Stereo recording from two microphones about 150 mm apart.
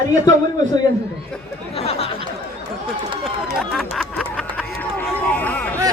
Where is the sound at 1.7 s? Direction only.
40° left (ahead or behind).